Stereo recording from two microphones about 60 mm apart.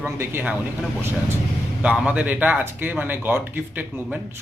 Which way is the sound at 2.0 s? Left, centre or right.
Right.